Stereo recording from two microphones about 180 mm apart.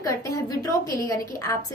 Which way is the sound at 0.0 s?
20° left (ahead or behind).